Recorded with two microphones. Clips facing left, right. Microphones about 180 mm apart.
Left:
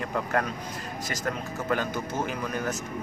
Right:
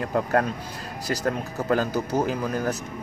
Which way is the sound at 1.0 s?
35° right (ahead or behind).